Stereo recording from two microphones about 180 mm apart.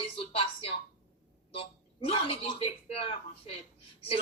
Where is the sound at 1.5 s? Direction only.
30° left (ahead or behind).